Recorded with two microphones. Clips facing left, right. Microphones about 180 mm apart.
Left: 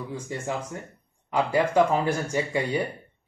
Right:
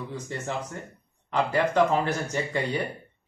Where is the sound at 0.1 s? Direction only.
10° left (ahead or behind).